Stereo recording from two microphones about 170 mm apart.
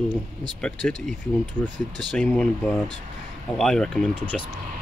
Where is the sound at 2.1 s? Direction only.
5° left (ahead or behind).